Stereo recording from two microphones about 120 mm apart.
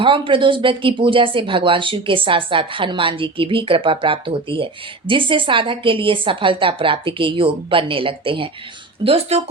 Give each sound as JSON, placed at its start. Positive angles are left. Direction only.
{"t": 0.0, "sound": "speech", "side_deg": -45}